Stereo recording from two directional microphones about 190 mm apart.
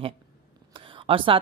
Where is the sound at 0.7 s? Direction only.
25° right (ahead or behind).